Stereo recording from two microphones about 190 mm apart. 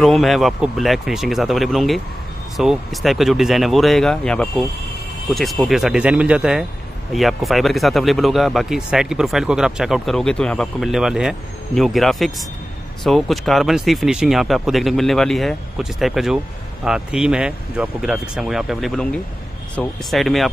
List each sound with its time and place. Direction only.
0.0 s speech: centre (ahead or behind)